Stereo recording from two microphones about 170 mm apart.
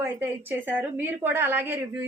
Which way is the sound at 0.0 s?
10° right (ahead or behind).